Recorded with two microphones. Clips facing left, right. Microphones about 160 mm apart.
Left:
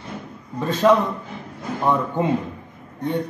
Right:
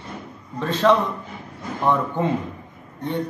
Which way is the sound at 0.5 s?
10° left (ahead or behind).